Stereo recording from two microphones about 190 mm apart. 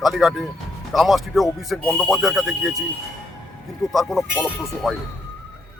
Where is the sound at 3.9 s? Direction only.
Centre (ahead or behind).